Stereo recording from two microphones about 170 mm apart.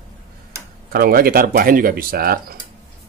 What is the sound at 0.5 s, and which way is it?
Tick-tock, 15° right (ahead or behind).